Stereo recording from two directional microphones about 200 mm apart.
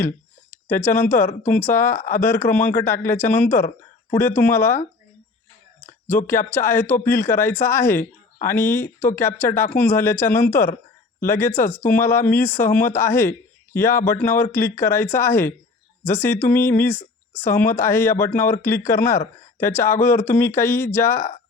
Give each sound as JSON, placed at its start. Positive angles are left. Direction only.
{"t": 0.5, "sound": "a man's voice", "side_deg": 10}
{"t": 5.8, "sound": "a sound", "side_deg": 10}
{"t": 6.5, "sound": "a man's voice", "side_deg": 10}